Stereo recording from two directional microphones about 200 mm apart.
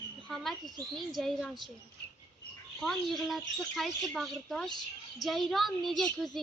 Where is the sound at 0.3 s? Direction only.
Centre (ahead or behind).